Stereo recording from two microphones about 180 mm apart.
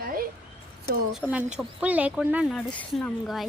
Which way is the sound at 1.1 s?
10° right (ahead or behind).